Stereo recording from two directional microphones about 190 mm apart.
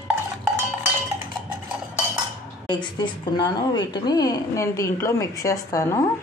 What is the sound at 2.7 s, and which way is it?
A woman's voice, 25° left (ahead or behind).